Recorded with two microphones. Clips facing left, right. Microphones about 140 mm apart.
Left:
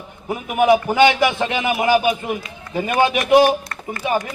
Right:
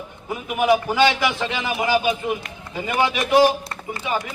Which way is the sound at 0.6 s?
20° left (ahead or behind).